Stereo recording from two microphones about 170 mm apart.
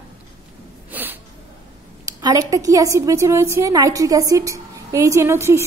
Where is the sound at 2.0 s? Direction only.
20° right (ahead or behind).